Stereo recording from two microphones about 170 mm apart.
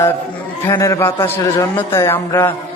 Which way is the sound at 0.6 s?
20° left (ahead or behind).